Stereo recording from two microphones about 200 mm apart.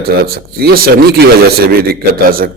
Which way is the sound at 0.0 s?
50° right (ahead or behind).